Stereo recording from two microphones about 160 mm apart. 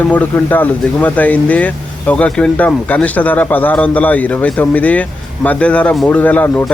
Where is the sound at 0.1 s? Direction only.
10° left (ahead or behind).